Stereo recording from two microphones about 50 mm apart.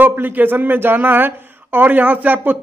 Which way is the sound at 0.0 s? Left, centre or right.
Right.